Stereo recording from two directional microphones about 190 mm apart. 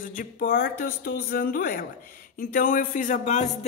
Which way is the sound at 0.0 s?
45° left (ahead or behind).